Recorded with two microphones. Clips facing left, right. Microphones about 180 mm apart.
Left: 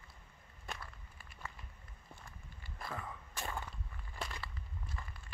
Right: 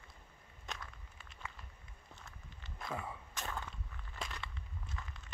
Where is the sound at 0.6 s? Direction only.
5° left (ahead or behind).